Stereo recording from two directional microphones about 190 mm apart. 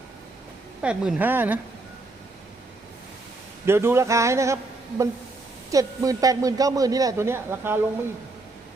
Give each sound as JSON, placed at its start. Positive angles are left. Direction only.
{"t": 0.8, "sound": "a man's voice", "side_deg": -5}
{"t": 3.7, "sound": "a man's voice", "side_deg": -15}